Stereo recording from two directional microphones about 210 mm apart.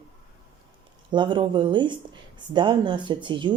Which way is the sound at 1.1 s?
20° right (ahead or behind).